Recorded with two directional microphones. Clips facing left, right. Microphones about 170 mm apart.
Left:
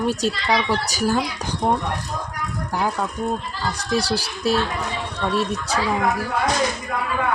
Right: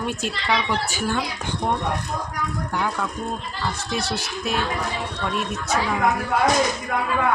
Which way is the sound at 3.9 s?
35° left (ahead or behind).